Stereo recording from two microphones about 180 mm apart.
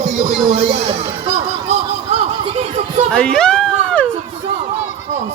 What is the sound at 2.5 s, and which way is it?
Chatter, 40° right (ahead or behind).